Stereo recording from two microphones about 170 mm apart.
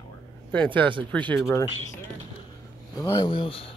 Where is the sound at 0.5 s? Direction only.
10° left (ahead or behind).